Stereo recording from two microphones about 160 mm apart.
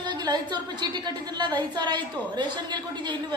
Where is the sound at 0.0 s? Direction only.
25° right (ahead or behind).